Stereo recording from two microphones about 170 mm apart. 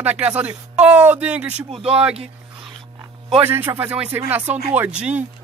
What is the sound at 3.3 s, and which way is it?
Speech, 10° right (ahead or behind).